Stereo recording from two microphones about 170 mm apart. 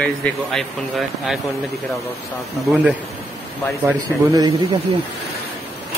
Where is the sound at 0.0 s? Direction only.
5° left (ahead or behind).